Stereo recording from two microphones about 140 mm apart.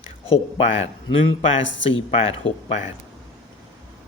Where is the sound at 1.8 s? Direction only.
45° left (ahead or behind).